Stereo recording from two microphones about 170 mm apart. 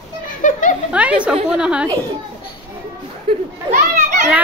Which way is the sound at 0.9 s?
10° right (ahead or behind).